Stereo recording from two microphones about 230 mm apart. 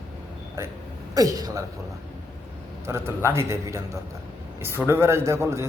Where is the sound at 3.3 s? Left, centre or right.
Centre.